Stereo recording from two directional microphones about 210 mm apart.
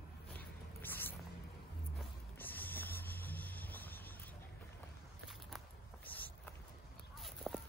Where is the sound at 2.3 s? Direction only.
10° left (ahead or behind).